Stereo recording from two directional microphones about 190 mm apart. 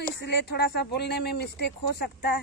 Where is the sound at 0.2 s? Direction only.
60° left (ahead or behind).